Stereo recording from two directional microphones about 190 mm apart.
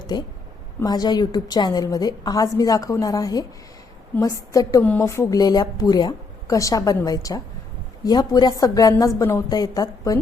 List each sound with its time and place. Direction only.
0.1 s a woman's voice: 20° left (ahead or behind)